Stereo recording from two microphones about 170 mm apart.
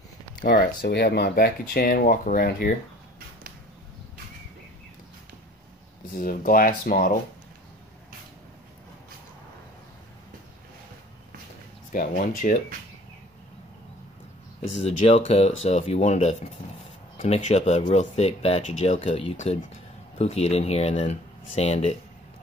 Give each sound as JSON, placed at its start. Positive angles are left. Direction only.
{"t": 0.4, "sound": "speech", "side_deg": 50}
{"t": 0.8, "sound": "speech", "side_deg": 70}
{"t": 6.1, "sound": "speech", "side_deg": 55}
{"t": 11.9, "sound": "speech", "side_deg": 50}
{"t": 14.7, "sound": "speech", "side_deg": 40}